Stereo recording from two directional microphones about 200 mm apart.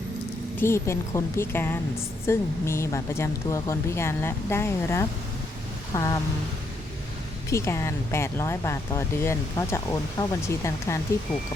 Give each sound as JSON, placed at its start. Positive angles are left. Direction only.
{"t": 0.6, "sound": "speech", "side_deg": 15}
{"t": 7.5, "sound": "speech", "side_deg": 15}